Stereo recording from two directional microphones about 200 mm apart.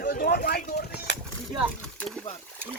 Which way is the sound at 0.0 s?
50° left (ahead or behind).